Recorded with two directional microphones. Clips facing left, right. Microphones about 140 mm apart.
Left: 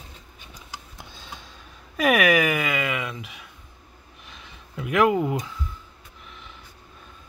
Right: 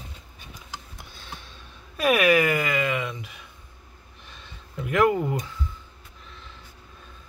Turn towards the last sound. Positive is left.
turn(degrees=10)  # may be behind; listen again after turning